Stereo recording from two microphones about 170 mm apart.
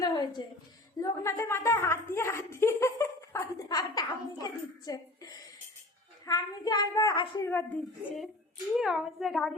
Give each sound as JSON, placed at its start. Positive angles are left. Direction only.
{"t": 0.4, "sound": "a child's voice", "side_deg": 25}
{"t": 8.7, "sound": "a woman's voice", "side_deg": 0}